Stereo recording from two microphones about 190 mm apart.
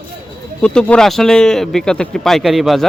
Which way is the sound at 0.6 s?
5° left (ahead or behind).